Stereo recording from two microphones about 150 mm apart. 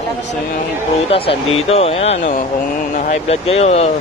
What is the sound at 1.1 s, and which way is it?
Speech, 40° left (ahead or behind).